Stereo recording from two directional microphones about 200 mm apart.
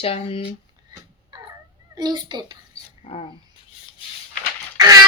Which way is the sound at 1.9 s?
20° right (ahead or behind).